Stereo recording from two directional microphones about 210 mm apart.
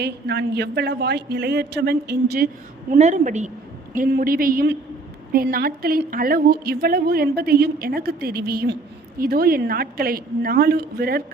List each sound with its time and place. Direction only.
0.0 s a woman's voice: 50° right (ahead or behind)
2.9 s a woman's voice: 35° right (ahead or behind)